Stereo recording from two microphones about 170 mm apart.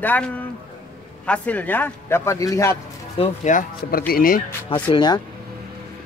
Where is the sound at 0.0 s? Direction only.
10° left (ahead or behind).